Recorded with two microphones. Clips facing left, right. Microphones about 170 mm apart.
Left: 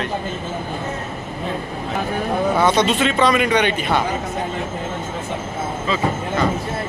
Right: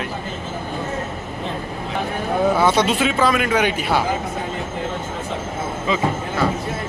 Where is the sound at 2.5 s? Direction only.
5° right (ahead or behind).